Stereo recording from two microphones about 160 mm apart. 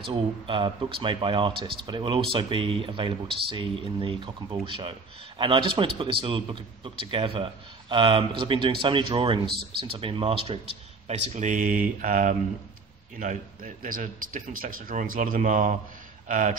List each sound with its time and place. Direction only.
0.0 s speech: 35° right (ahead or behind)
11.1 s a man's voice: 50° right (ahead or behind)